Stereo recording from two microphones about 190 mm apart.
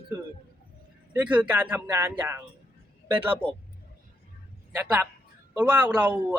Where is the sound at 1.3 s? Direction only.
10° right (ahead or behind).